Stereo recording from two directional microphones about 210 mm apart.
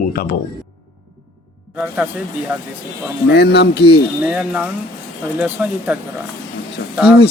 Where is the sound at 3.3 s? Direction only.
50° left (ahead or behind).